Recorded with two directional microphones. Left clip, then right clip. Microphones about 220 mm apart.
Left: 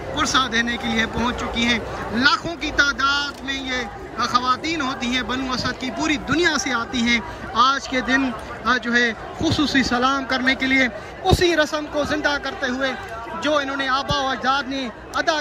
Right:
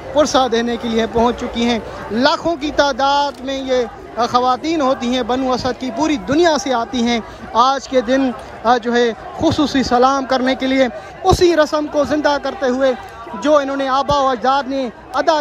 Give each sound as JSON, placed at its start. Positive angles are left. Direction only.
{"t": 0.2, "sound": "a man's voice", "side_deg": -25}